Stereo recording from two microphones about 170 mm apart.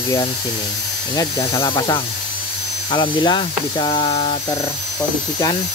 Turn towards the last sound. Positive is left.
turn(degrees=35)  # may be behind; listen again after turning